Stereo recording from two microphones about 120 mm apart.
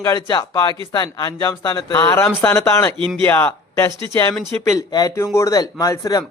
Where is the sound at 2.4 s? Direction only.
20° left (ahead or behind).